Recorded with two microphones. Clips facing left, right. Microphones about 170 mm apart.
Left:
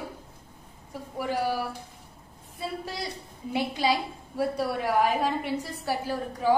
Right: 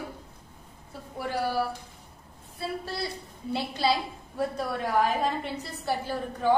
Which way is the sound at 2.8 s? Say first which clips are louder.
Right 1 dB; 15° left (ahead or behind).